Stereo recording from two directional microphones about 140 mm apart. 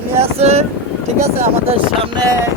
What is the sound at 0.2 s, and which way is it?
Vehicle, 45° right (ahead or behind).